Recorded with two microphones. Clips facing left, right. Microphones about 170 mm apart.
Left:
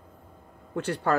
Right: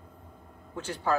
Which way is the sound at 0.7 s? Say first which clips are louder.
Left 3 dB; 60° left (ahead or behind).